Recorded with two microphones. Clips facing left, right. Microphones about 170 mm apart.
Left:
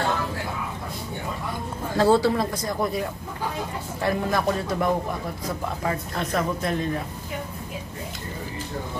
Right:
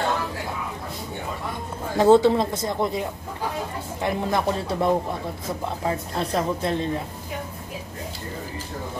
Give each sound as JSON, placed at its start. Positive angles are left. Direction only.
{"t": 2.0, "sound": "speech", "side_deg": -20}